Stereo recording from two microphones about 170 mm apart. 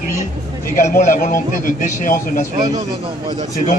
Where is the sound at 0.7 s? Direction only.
50° left (ahead or behind).